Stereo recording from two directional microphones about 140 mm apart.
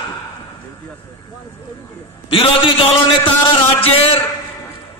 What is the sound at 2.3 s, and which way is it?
Speech, 40° left (ahead or behind).